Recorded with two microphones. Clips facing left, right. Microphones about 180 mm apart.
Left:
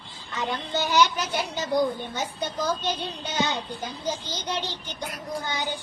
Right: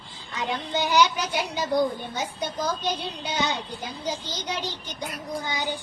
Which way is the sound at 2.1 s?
10° right (ahead or behind).